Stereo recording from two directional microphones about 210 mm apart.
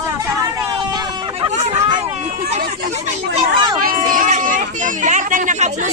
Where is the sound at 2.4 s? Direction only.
30° right (ahead or behind).